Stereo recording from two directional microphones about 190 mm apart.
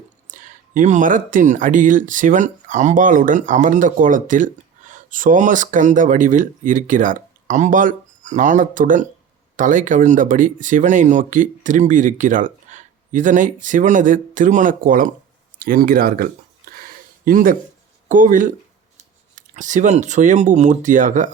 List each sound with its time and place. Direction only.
0.3 s speech: 45° right (ahead or behind)